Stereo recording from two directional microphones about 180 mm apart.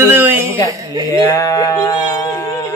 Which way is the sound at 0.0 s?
10° right (ahead or behind).